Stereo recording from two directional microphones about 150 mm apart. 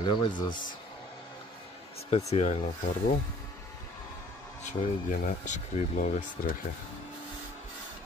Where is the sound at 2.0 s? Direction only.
45° left (ahead or behind).